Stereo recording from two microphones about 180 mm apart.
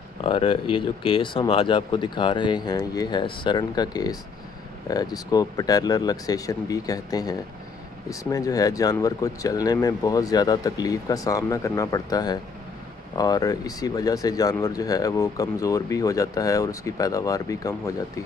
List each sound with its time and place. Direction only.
0.2 s speech: 30° left (ahead or behind)